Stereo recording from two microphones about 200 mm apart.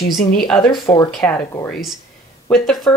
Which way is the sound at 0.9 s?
15° left (ahead or behind).